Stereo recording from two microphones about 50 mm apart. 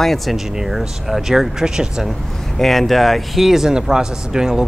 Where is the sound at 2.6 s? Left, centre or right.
Centre.